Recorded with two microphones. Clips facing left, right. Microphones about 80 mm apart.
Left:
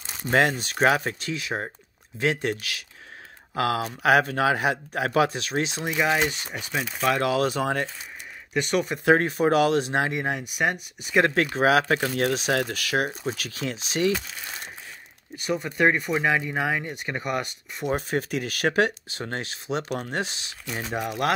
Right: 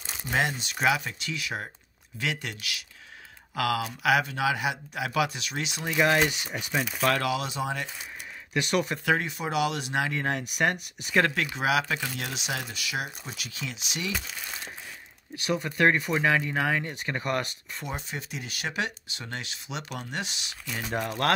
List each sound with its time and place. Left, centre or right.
0.3 s speech: left
5.9 s speech: centre
7.2 s speech: left
8.5 s speech: centre
9.0 s speech: left
10.2 s speech: centre
11.3 s speech: left
15.3 s speech: centre
17.9 s speech: left
20.9 s speech: centre